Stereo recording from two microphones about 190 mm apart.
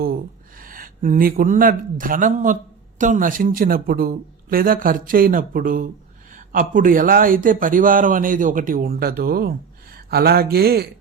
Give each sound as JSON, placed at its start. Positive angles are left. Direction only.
{"t": 0.6, "sound": "a man's voice", "side_deg": -45}